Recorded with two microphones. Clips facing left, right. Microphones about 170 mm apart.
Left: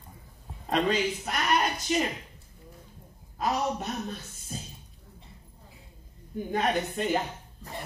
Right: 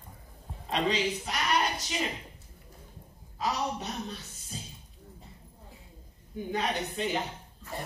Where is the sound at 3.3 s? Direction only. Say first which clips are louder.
Left 3 dB; 50° left (ahead or behind).